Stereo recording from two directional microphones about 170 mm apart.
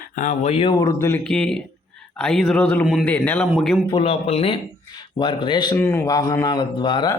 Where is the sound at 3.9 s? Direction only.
35° left (ahead or behind).